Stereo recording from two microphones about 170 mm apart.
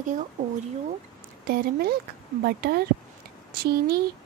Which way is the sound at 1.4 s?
65° right (ahead or behind).